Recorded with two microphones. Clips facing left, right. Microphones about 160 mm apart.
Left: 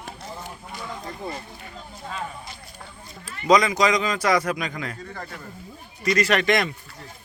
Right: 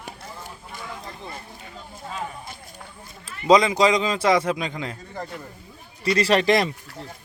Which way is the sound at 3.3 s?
25° right (ahead or behind).